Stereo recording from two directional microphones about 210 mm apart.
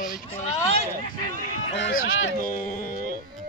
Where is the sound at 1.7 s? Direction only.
55° left (ahead or behind).